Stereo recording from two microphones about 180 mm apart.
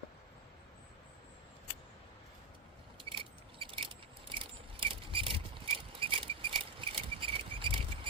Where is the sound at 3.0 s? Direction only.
30° right (ahead or behind).